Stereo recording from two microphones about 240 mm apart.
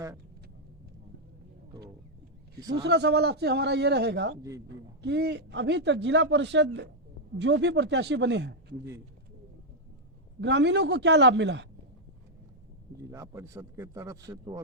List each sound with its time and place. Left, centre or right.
2.6 s a man's voice: centre
2.8 s a man's voice: right
10.4 s a man's voice: right
13.0 s a man's voice: centre